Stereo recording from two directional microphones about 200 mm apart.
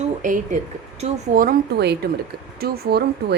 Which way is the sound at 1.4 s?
50° right (ahead or behind).